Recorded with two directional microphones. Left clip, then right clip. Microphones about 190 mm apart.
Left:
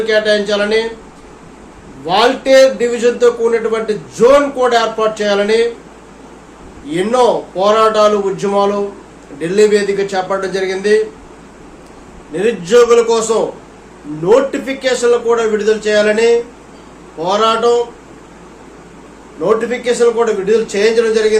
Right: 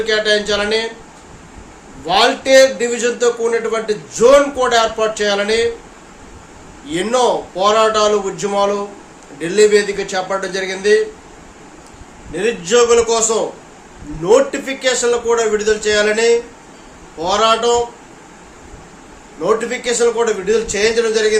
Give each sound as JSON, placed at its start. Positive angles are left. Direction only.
{"t": 0.0, "sound": "a man's voice", "side_deg": -15}
{"t": 2.0, "sound": "a man's voice", "side_deg": -15}
{"t": 6.9, "sound": "a man's voice", "side_deg": -15}
{"t": 12.3, "sound": "a man's voice", "side_deg": -15}
{"t": 19.4, "sound": "a man's voice", "side_deg": -15}